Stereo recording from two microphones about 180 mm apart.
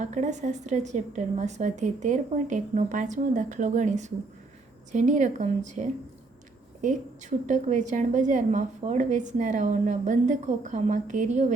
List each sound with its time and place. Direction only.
0.0 s a woman's voice: 40° right (ahead or behind)